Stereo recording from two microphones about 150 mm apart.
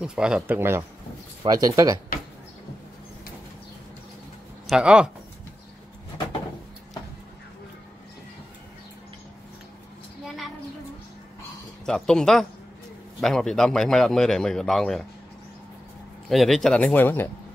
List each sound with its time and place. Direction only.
0.0 s speech: 5° right (ahead or behind); by 2.0 s 25° right (ahead or behind)
4.6 s a man's voice: 5° right (ahead or behind)
11.8 s a man's voice: 5° left (ahead or behind)
16.3 s a man's voice: centre (ahead or behind)